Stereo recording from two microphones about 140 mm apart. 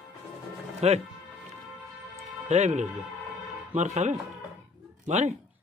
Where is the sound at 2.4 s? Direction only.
55° right (ahead or behind).